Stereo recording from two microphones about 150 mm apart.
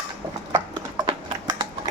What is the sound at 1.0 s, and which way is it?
Typing, 30° right (ahead or behind).